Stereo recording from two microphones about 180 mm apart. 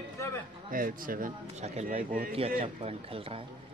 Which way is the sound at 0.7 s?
50° right (ahead or behind).